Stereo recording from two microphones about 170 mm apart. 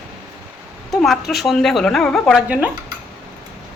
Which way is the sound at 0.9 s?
Centre (ahead or behind).